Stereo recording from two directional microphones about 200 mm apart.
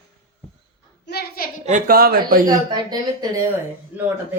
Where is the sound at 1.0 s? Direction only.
50° left (ahead or behind).